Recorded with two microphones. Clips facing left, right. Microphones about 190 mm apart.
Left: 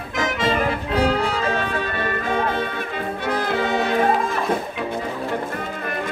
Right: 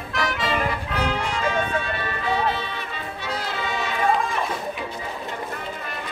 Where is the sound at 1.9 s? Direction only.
50° left (ahead or behind).